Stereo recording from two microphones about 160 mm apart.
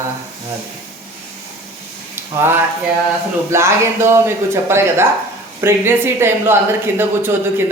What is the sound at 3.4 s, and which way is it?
A man's voice, 15° right (ahead or behind).